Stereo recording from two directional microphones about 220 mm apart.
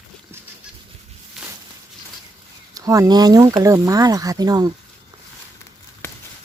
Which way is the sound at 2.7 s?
15° right (ahead or behind).